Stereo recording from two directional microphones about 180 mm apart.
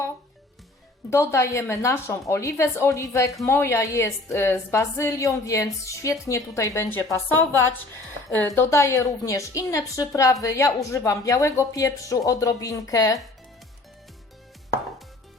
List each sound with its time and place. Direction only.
1.1 s speech: 15° left (ahead or behind)
8.5 s speech: 15° left (ahead or behind)